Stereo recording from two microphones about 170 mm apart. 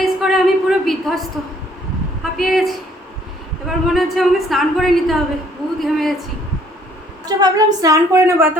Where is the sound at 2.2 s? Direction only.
Centre (ahead or behind).